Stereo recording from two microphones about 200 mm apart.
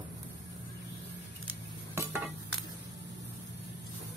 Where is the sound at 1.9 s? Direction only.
10° right (ahead or behind).